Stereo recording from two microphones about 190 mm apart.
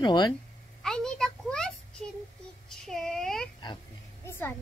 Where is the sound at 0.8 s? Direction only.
5° left (ahead or behind).